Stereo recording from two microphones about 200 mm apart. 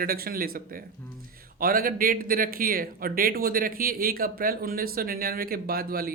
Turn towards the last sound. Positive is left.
turn(degrees=-50)  # may be behind; listen again after turning